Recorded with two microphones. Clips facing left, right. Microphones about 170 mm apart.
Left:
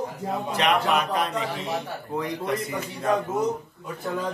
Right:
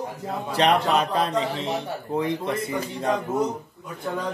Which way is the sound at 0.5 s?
35° right (ahead or behind).